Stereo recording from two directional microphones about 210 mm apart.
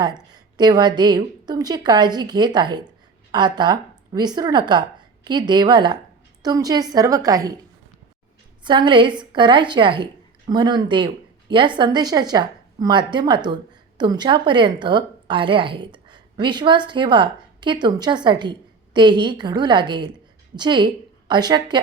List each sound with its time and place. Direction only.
0.0 s a woman's voice: 20° right (ahead or behind)
8.6 s a woman's voice: 20° right (ahead or behind)